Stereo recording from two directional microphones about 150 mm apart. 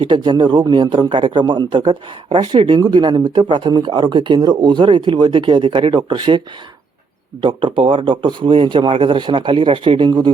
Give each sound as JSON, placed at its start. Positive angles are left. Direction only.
{"t": 0.0, "sound": "a man's voice", "side_deg": -30}
{"t": 7.4, "sound": "a man's voice", "side_deg": -35}